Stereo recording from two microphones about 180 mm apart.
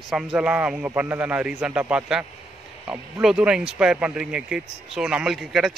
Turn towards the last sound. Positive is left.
turn(degrees=0)  # may be behind; listen again after turning